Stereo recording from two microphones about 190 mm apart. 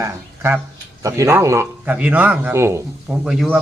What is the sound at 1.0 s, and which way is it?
Speech, 15° right (ahead or behind).